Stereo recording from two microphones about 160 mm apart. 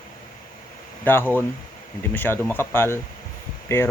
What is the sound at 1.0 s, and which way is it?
Speech, 10° left (ahead or behind).